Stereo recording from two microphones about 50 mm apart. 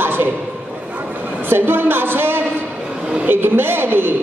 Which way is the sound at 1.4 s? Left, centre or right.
Right.